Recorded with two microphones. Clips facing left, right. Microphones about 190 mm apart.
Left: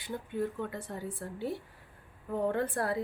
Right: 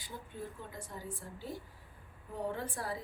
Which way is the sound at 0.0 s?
65° left (ahead or behind).